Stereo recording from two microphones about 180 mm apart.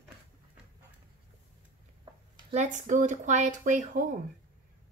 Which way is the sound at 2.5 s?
40° right (ahead or behind).